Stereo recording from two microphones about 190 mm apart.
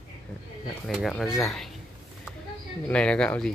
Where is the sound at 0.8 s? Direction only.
Centre (ahead or behind).